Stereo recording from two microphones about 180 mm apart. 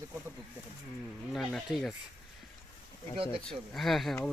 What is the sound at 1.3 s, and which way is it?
Speech, centre (ahead or behind).